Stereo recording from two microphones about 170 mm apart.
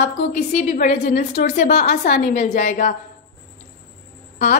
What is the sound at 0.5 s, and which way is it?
A woman's voice, 45° left (ahead or behind).